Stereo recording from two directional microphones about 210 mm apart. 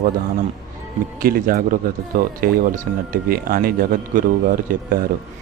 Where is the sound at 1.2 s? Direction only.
45° right (ahead or behind).